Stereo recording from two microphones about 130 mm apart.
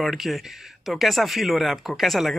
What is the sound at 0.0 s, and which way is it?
Speech, centre (ahead or behind).